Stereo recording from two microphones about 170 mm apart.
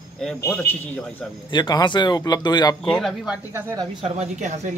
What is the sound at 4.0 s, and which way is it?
Speech, 40° right (ahead or behind).